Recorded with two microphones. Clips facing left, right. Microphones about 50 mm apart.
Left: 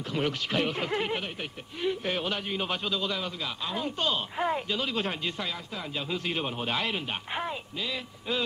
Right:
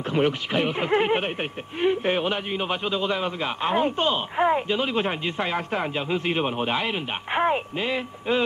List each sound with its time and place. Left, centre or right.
0.1 s speech: right
4.0 s speech: right
5.5 s speech: right
5.9 s speech: right
7.3 s speech: right